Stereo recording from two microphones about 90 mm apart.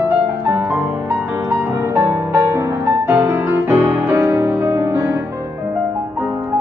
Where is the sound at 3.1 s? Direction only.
30° right (ahead or behind).